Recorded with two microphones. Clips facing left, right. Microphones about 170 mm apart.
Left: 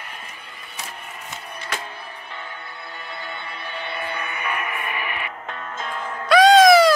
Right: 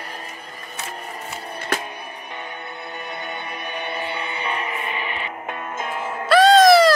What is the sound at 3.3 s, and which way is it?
Music, 20° right (ahead or behind).